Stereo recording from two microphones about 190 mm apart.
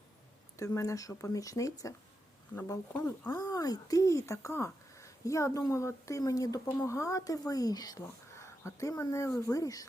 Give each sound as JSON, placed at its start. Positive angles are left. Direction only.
{"t": 0.5, "sound": "speech", "side_deg": 15}